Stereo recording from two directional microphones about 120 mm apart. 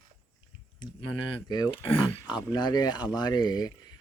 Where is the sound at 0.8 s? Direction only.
40° left (ahead or behind).